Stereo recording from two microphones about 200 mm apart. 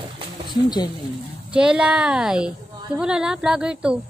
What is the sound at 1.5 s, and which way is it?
A woman's voice, 5° right (ahead or behind).